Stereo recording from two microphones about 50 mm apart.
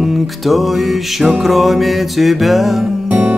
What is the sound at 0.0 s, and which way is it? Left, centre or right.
Music, centre.